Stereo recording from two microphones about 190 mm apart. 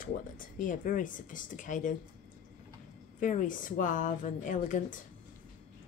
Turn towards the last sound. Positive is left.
turn(degrees=40)  # may be behind; listen again after turning